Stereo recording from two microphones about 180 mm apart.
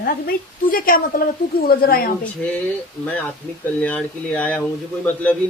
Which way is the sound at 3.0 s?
5° left (ahead or behind).